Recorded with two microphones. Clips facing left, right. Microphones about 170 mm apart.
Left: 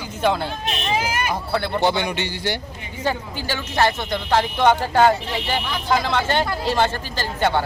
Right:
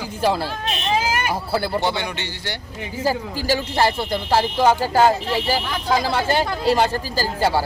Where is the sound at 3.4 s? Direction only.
35° right (ahead or behind).